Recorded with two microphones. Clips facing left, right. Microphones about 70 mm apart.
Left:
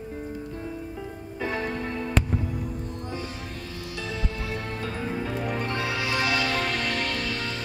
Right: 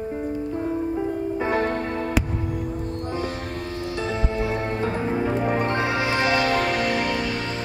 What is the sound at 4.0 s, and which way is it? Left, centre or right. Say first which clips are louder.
Music: right 7 dB; right.